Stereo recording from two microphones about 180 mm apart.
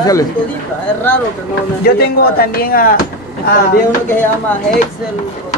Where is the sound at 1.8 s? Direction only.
60° left (ahead or behind).